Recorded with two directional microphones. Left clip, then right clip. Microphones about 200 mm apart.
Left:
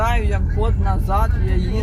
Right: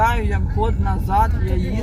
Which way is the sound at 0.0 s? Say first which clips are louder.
Right 3 dB; 25° left (ahead or behind).